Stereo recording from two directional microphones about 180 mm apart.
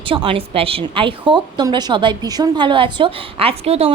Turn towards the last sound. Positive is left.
turn(degrees=-35)  # may be behind; listen again after turning